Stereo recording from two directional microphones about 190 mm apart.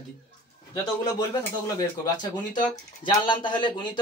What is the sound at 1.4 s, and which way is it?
Speech, 20° left (ahead or behind).